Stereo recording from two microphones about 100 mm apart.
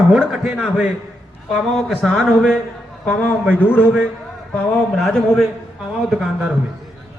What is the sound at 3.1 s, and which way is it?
Speech, 15° left (ahead or behind).